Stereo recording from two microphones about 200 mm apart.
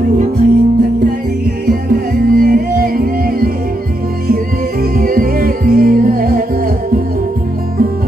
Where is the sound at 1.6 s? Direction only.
50° right (ahead or behind).